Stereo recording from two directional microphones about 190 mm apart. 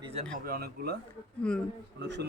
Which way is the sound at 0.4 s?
55° right (ahead or behind).